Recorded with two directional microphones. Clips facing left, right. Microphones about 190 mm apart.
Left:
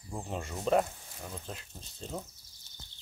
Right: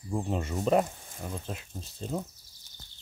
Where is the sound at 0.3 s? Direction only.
Centre (ahead or behind).